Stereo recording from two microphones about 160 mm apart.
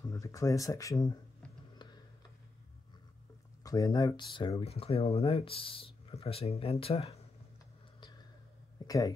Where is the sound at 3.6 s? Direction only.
20° left (ahead or behind); by 7.2 s 40° left (ahead or behind).